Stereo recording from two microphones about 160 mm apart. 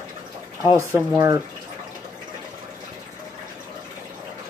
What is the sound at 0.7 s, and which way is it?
Speech, 15° right (ahead or behind).